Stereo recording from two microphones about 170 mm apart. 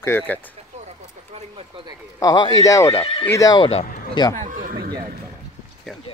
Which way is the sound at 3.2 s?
20° left (ahead or behind).